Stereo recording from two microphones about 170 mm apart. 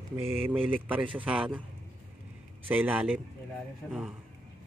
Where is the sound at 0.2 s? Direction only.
35° right (ahead or behind).